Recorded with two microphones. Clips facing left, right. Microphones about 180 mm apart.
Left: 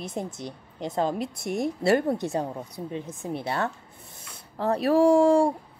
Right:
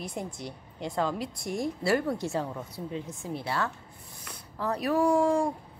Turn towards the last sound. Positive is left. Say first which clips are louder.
# left 6 dB
turn(degrees=30)  # may be behind; listen again after turning